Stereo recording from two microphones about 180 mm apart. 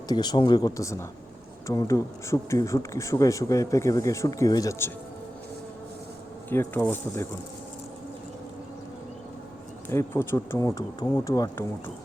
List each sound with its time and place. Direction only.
0.1 s speech: 25° left (ahead or behind)
6.5 s speech: 10° left (ahead or behind)
9.9 s speech: 15° left (ahead or behind)